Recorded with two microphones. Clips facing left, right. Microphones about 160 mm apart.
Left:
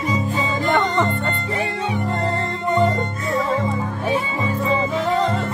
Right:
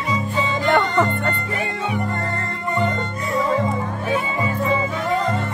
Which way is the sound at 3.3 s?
Centre (ahead or behind).